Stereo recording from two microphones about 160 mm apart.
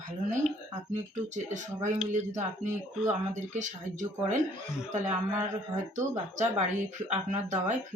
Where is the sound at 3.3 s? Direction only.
50° right (ahead or behind).